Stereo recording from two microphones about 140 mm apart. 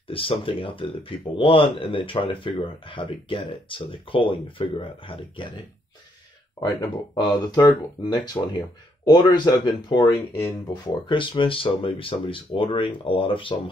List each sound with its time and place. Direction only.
0.1 s speech: 40° left (ahead or behind)
7.2 s speech: 30° left (ahead or behind)